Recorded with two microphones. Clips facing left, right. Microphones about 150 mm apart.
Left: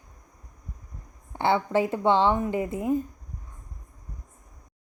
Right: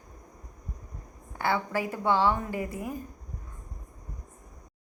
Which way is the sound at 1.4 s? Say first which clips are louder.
Left 6 dB; 25° left (ahead or behind).